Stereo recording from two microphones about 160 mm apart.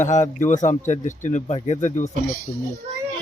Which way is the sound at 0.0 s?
50° left (ahead or behind).